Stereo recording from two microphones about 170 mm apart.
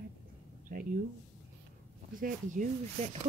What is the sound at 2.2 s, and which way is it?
Speech, 50° right (ahead or behind).